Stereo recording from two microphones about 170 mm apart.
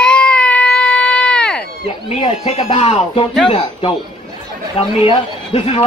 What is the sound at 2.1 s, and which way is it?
Speech, 35° left (ahead or behind).